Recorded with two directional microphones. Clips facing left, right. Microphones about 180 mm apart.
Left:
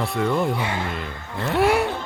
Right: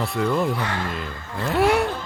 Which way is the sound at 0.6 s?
10° left (ahead or behind).